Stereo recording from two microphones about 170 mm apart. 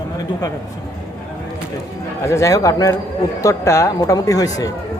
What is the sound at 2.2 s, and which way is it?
A man's voice, 20° left (ahead or behind).